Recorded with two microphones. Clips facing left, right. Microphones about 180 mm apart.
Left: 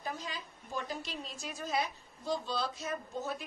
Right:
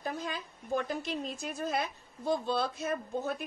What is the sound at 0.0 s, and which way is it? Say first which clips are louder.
A woman's voice: right 4 dB; 55° right (ahead or behind).